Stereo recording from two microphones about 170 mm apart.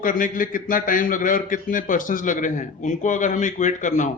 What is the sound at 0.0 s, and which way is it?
A man's voice, 55° left (ahead or behind).